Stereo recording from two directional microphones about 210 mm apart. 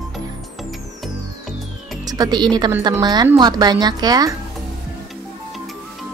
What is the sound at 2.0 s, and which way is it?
Speech, 20° right (ahead or behind).